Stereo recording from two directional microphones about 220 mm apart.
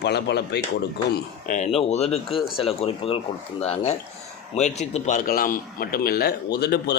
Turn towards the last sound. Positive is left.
turn(degrees=50)  # may be behind; listen again after turning